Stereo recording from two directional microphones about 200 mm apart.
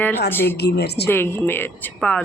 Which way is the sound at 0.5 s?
55° left (ahead or behind).